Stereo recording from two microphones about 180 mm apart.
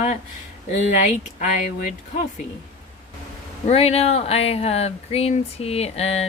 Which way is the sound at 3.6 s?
35° left (ahead or behind).